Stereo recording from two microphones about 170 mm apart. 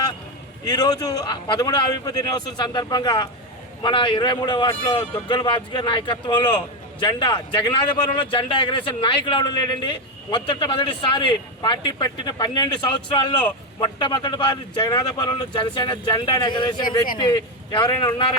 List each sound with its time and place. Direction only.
0.6 s a man's voice: 25° left (ahead or behind)
13.8 s a man's voice: 25° left (ahead or behind)